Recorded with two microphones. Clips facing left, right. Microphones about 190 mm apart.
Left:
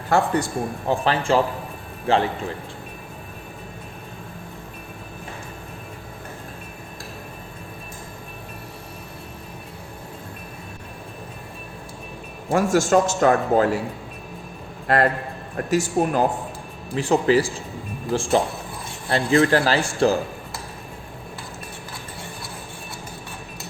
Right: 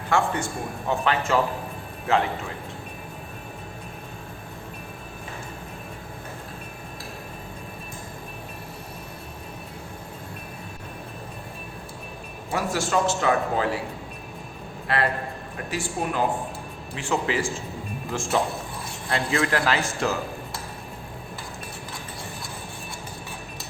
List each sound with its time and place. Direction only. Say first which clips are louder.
0.1 s a man's voice: left 4 dB; 35° left (ahead or behind)
12.5 s a man's voice: left 8 dB; 45° left (ahead or behind)
14.9 s a man's voice: left 5 dB; 45° left (ahead or behind)